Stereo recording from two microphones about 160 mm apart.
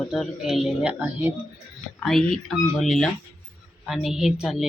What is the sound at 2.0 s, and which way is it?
Speech, 5° left (ahead or behind).